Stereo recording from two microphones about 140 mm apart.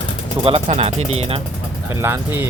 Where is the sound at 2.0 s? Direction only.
15° right (ahead or behind).